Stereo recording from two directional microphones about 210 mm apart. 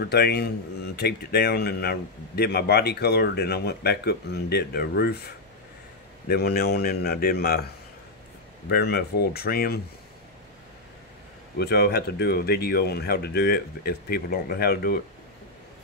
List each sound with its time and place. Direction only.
0.0 s a man's voice: 50° left (ahead or behind)
6.2 s a man's voice: 50° left (ahead or behind)
8.6 s a man's voice: 50° left (ahead or behind)
11.5 s a man's voice: 50° left (ahead or behind)